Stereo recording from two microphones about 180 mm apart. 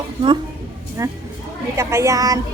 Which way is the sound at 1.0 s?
15° right (ahead or behind).